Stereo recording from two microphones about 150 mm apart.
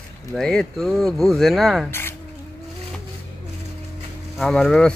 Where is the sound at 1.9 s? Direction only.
15° left (ahead or behind).